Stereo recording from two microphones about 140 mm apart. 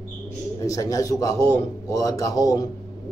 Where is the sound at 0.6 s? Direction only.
25° left (ahead or behind).